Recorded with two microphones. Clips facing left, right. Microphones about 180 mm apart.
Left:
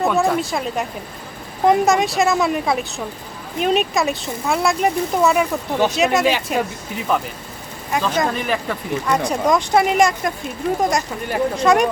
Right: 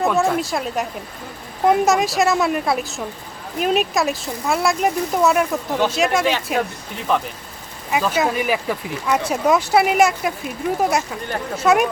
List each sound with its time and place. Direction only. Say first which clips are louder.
0.0 s speech: left 1 dB; centre (ahead or behind)